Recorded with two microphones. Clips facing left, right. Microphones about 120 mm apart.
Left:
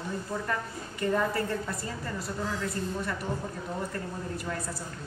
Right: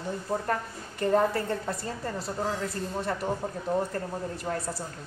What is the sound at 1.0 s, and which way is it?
A woman's voice, 40° right (ahead or behind).